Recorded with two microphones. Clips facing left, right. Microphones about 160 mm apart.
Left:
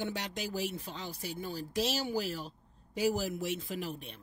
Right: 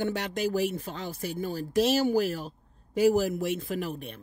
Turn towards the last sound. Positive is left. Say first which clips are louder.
# right 6 dB
turn(degrees=-55)  # may be behind; listen again after turning